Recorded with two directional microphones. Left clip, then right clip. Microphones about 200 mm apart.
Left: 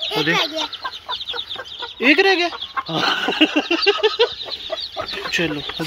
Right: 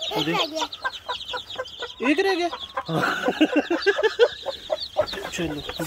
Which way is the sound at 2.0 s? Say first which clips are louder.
Left 7 dB; centre (ahead or behind).